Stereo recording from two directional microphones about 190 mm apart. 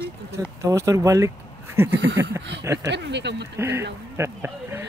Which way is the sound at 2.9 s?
65° right (ahead or behind).